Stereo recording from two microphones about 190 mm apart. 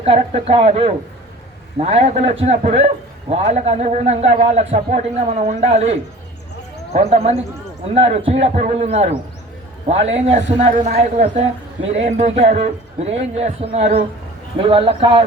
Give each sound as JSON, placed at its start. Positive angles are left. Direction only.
{"t": 0.0, "sound": "a man's voice", "side_deg": -30}